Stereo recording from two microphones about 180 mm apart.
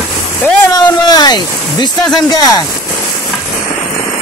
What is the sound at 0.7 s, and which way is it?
Speech, 25° left (ahead or behind).